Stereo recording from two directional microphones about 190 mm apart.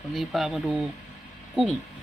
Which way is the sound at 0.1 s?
Centre (ahead or behind).